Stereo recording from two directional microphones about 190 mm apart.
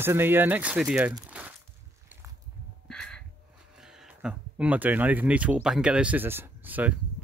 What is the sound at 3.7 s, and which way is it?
Speech, 5° right (ahead or behind).